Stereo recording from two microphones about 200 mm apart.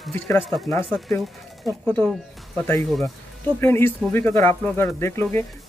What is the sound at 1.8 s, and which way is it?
Speech, 5° left (ahead or behind).